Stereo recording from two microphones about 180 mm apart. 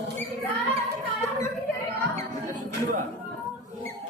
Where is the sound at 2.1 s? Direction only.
45° right (ahead or behind).